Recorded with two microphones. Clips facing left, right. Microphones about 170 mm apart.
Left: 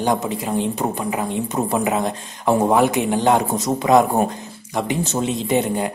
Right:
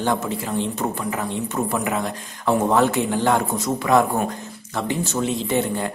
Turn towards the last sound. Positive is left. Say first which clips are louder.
# left 3 dB
turn(degrees=15)  # may be behind; listen again after turning